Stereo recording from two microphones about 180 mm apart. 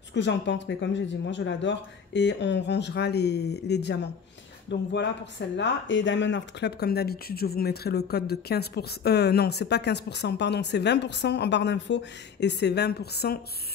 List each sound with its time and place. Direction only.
0.1 s speech: 75° left (ahead or behind)
5.6 s speech: 90° left; by 13.4 s 65° left (ahead or behind)